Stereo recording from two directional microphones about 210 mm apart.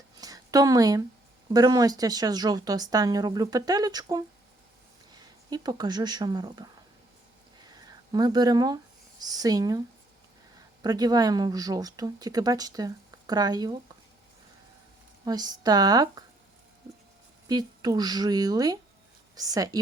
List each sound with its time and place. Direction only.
0.2 s a sound: 15° right (ahead or behind)
1.5 s speech: 15° right (ahead or behind)
5.5 s speech: 20° right (ahead or behind)
7.7 s speech: 20° right (ahead or behind)
10.8 s speech: 20° right (ahead or behind)
15.2 s speech: 20° right (ahead or behind)
17.5 s speech: 20° right (ahead or behind)